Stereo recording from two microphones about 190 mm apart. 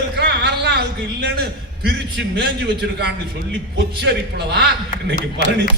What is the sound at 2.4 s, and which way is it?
A man's voice, 60° right (ahead or behind).